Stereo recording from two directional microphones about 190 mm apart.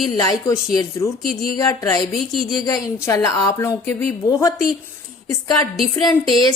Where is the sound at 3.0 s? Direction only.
15° left (ahead or behind).